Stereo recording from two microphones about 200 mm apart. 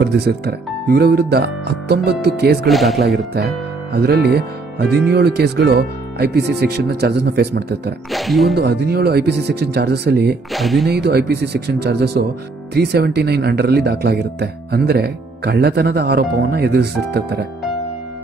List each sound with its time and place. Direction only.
0.0 s speech: 55° right (ahead or behind)
2.7 s speech: centre (ahead or behind)
3.3 s speech: 55° right (ahead or behind)
8.1 s speech: centre (ahead or behind)
8.5 s speech: 55° right (ahead or behind)
10.5 s speech: centre (ahead or behind)
10.9 s speech: 55° right (ahead or behind)